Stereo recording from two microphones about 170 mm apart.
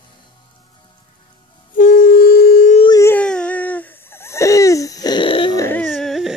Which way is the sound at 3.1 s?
5° left (ahead or behind).